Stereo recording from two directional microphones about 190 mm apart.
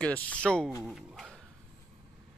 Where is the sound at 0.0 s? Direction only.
5° left (ahead or behind).